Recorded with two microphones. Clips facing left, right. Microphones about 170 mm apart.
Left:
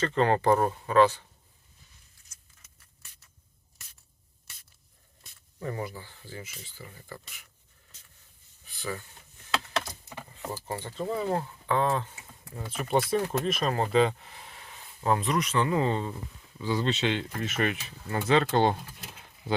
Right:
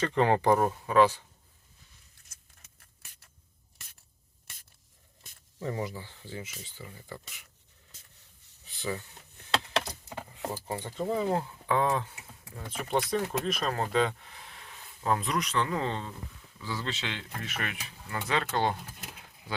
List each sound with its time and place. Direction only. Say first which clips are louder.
0.0 s speech: left 1 dB; 15° right (ahead or behind)
5.6 s speech: right 1 dB; 15° right (ahead or behind)
8.6 s a sound: right 1 dB; 20° right (ahead or behind)
10.1 s a sound: right 1 dB; 10° right (ahead or behind)
11.1 s speech: right 1 dB; 15° right (ahead or behind)
12.5 s speech: left 3 dB; 5° left (ahead or behind); by 18.8 s 25° left (ahead or behind)